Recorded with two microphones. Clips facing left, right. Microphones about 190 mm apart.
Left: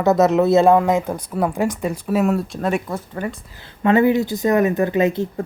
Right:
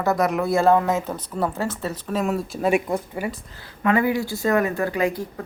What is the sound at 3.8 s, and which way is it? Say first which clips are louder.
Speech: left 5 dB; 25° left (ahead or behind).